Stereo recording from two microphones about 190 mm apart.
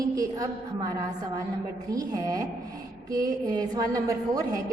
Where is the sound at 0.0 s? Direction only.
20° right (ahead or behind).